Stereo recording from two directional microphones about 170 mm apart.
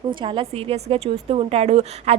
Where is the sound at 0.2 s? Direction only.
30° right (ahead or behind).